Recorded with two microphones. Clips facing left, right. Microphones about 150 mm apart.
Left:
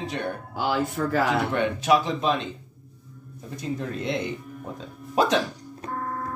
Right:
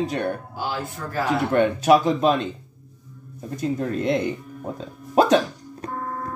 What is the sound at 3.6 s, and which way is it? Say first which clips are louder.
Speech: right 6 dB; 45° right (ahead or behind).